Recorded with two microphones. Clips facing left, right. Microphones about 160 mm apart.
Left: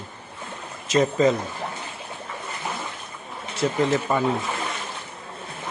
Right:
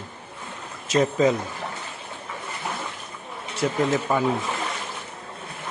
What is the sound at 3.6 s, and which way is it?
Speech, centre (ahead or behind).